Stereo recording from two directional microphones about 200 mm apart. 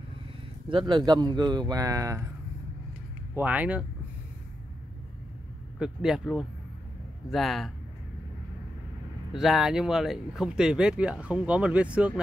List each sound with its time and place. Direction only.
0.7 s speech: 25° right (ahead or behind)
3.3 s speech: 5° right (ahead or behind)
5.8 s speech: 5° right (ahead or behind)
9.3 s speech: centre (ahead or behind)